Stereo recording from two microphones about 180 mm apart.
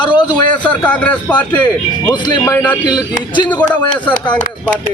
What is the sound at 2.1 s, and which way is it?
Speech, 25° left (ahead or behind).